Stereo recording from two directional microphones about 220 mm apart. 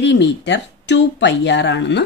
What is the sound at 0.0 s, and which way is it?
Speech, 55° left (ahead or behind).